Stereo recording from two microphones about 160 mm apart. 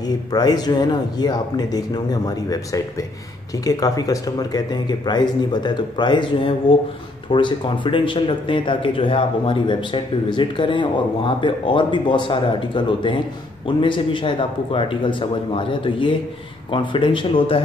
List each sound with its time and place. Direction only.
0.0 s speech: 25° left (ahead or behind)